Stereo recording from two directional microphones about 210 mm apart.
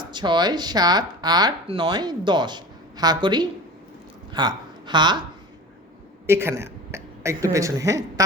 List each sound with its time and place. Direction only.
0.0 s speech: 20° right (ahead or behind)
6.2 s speech: 10° right (ahead or behind)